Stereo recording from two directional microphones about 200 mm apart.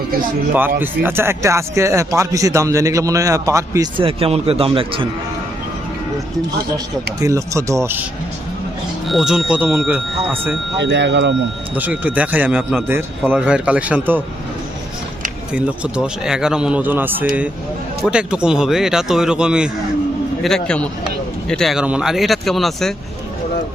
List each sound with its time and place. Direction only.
0.8 s speech: 10° right (ahead or behind); by 5.0 s 25° right (ahead or behind)
7.2 s speech: 15° right (ahead or behind)
9.0 s speech: centre (ahead or behind)
10.8 s speech: 60° right (ahead or behind)
11.7 s speech: 10° right (ahead or behind)
15.5 s speech: 5° right (ahead or behind)